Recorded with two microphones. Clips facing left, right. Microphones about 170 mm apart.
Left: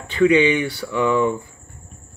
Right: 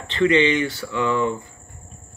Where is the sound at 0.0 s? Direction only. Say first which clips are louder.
Left 3 dB; 10° left (ahead or behind).